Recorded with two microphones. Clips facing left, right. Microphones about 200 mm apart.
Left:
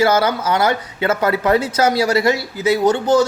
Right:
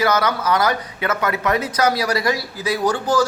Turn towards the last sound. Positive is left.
turn(degrees=25)  # may be behind; listen again after turning